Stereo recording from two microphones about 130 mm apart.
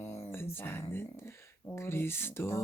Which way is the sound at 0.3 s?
15° left (ahead or behind).